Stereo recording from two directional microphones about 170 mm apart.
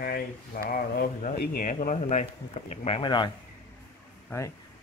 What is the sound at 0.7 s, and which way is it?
Speech, 55° left (ahead or behind).